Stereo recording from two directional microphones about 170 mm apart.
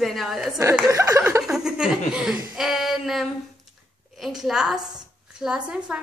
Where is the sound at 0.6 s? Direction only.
15° right (ahead or behind).